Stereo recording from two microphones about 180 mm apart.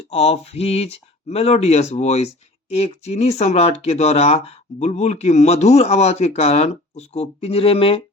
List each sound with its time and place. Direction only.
0.1 s speech: 35° left (ahead or behind)